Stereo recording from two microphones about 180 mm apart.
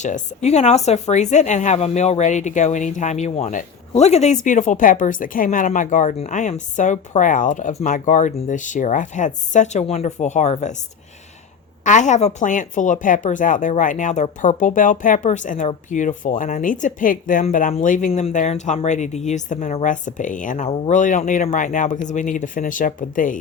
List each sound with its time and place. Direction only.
0.0 s speech: 40° left (ahead or behind)
11.8 s speech: 45° left (ahead or behind)
18.1 s speech: 35° left (ahead or behind)